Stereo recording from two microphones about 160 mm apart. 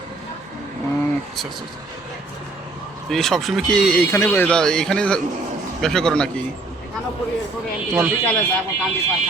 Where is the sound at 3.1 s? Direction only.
Centre (ahead or behind).